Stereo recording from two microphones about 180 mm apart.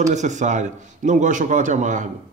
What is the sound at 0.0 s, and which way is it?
A man's voice, 40° right (ahead or behind).